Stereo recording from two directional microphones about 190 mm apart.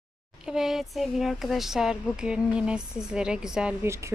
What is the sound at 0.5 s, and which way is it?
Speech, centre (ahead or behind).